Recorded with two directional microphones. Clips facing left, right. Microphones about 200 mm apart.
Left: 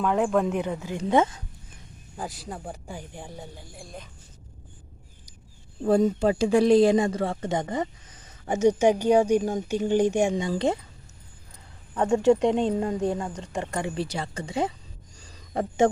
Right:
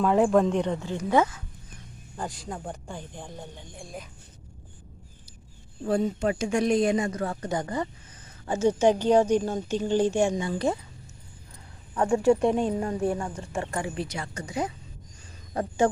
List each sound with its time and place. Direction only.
0.0 s speech: centre (ahead or behind)
1.0 s speech: 25° left (ahead or behind)
2.2 s speech: 10° left (ahead or behind)
5.8 s speech: 40° left (ahead or behind); by 10.5 s 20° left (ahead or behind)
11.9 s speech: 20° left (ahead or behind)
13.7 s a woman's voice: 35° left (ahead or behind)